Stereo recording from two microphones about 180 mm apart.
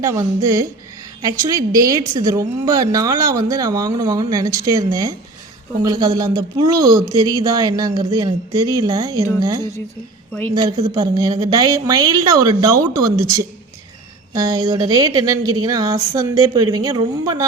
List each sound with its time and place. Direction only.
0.0 s a woman's voice: 20° right (ahead or behind)
11.1 s a woman's voice: 25° right (ahead or behind)